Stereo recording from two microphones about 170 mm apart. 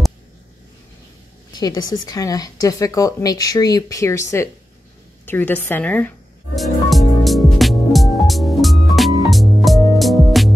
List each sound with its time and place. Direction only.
1.5 s speech: 25° left (ahead or behind)
5.2 s music: 10° left (ahead or behind)